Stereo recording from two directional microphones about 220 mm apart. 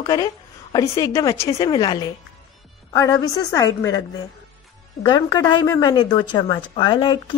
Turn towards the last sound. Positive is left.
turn(degrees=20)  # may be behind; listen again after turning